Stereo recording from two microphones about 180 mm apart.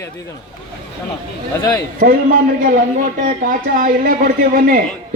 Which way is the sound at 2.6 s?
50° right (ahead or behind).